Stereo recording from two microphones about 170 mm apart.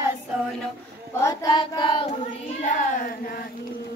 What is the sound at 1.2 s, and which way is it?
Child singing, 20° left (ahead or behind).